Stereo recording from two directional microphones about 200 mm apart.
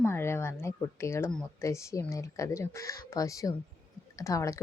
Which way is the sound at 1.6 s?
15° left (ahead or behind).